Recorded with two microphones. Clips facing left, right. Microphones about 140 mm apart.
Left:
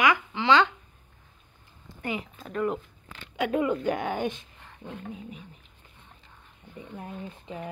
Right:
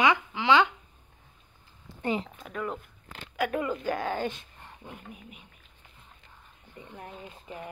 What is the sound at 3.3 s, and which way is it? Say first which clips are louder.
A woman's voice: left 3 dB; 20° left (ahead or behind).